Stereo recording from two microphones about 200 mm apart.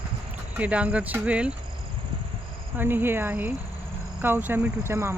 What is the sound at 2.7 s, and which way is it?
Speech, 10° right (ahead or behind).